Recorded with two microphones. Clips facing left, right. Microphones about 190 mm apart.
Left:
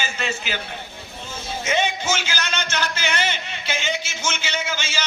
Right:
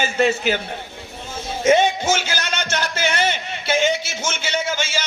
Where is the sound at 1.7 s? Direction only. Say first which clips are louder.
Right 7 dB; 45° right (ahead or behind).